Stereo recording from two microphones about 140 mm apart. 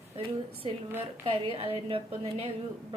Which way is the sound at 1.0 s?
40° right (ahead or behind).